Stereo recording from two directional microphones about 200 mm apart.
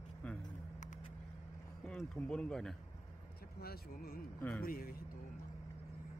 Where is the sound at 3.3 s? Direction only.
50° left (ahead or behind).